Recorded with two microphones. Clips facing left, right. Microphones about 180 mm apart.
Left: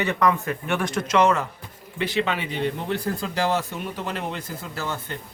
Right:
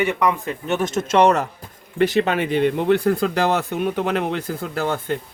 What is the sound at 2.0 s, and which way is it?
Speech, 45° right (ahead or behind).